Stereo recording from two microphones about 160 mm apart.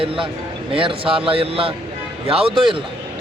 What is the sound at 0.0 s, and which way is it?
Speech, 35° right (ahead or behind).